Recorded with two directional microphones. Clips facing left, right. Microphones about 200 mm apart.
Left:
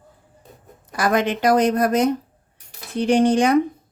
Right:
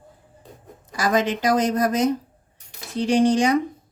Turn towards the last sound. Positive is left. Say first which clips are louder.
# left 2 dB
turn(degrees=55)  # may be behind; listen again after turning